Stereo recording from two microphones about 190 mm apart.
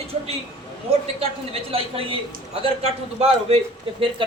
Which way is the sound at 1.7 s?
30° right (ahead or behind).